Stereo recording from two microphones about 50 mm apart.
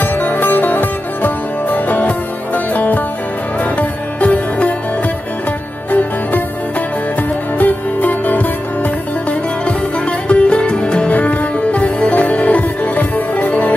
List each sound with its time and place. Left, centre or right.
0.0 s music: left
5.9 s music: left
7.5 s music: left